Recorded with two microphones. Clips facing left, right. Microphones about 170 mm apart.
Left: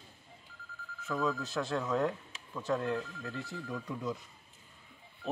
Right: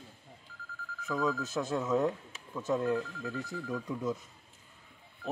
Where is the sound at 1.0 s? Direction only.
Centre (ahead or behind).